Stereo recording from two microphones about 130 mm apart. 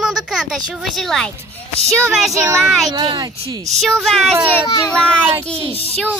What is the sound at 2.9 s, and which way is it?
Speech, 30° right (ahead or behind).